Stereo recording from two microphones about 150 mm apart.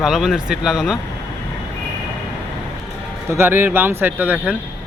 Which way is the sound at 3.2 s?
15° right (ahead or behind).